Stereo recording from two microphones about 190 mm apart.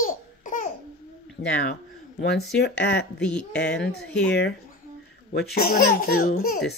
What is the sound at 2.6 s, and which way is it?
Speech, 60° left (ahead or behind).